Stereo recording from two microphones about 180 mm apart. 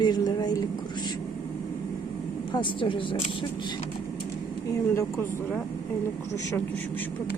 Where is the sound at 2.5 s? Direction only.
30° left (ahead or behind).